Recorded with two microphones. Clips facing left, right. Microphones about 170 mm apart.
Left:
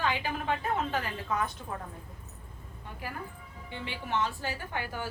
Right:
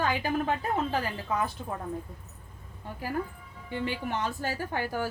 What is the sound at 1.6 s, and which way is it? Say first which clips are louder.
Speech: right 3 dB; 25° right (ahead or behind).